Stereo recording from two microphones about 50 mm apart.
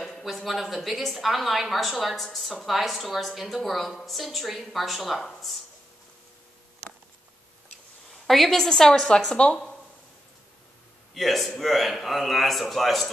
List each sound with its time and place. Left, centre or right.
0.0 s a woman's voice: centre
8.3 s a woman's voice: centre; by 9.6 s left
11.1 s a woman's voice: centre